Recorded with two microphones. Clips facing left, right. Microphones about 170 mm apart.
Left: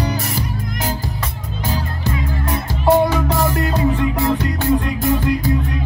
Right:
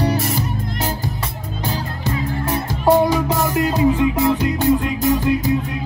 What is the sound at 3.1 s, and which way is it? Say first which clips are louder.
Music: even; 15° right (ahead or behind).